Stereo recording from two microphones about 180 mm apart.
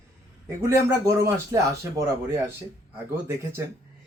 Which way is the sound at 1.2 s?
15° right (ahead or behind).